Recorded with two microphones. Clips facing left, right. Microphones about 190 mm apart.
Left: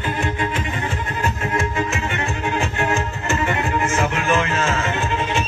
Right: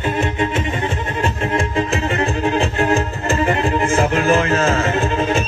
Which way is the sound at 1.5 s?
30° right (ahead or behind).